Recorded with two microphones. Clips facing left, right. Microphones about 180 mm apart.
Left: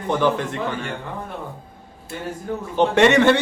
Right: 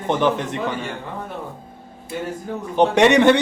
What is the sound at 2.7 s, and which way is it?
Speech, 15° right (ahead or behind).